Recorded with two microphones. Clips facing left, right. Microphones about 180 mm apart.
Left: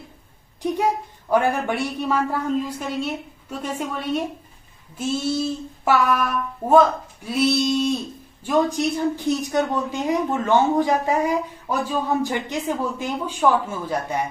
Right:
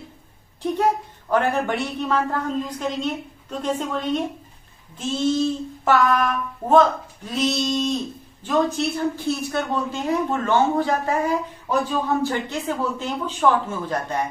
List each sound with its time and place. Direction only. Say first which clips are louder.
0.6 s speech: right 1 dB; 10° left (ahead or behind)
4.9 s child singing: right 2 dB; 10° left (ahead or behind)